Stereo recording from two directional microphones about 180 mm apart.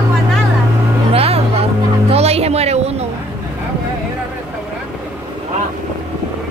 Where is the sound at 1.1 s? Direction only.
35° right (ahead or behind).